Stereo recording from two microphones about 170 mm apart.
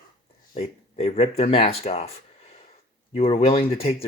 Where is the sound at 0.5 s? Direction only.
35° left (ahead or behind).